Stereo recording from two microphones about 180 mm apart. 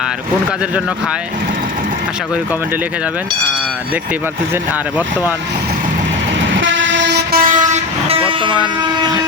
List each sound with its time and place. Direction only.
6.6 s vehicle: 90° right; by 7.4 s 70° right (ahead or behind)
7.4 s vehicle: 45° right (ahead or behind)